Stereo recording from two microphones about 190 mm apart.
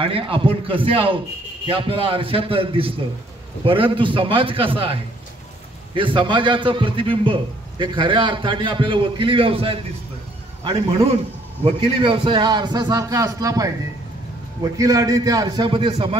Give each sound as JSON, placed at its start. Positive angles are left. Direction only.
{"t": 0.0, "sound": "a man's voice", "side_deg": -30}
{"t": 5.9, "sound": "a man's voice", "side_deg": -25}